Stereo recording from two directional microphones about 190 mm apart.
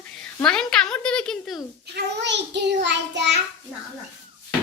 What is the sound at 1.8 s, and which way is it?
A child's voice, 65° right (ahead or behind).